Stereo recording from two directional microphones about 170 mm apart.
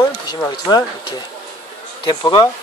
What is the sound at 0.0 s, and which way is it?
Speech, 20° left (ahead or behind).